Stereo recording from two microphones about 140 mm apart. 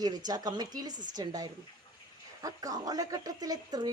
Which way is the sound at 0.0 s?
25° right (ahead or behind).